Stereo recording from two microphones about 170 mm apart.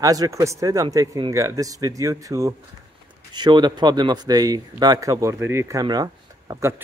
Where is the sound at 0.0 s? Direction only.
20° right (ahead or behind).